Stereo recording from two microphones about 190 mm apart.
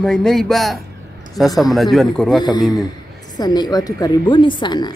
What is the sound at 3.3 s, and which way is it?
A woman's voice, 20° left (ahead or behind).